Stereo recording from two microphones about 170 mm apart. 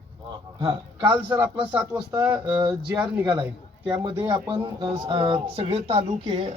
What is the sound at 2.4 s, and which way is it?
Speech, 25° right (ahead or behind).